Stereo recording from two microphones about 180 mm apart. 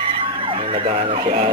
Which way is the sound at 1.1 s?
35° right (ahead or behind).